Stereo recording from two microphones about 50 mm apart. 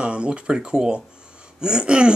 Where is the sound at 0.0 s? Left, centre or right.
Right.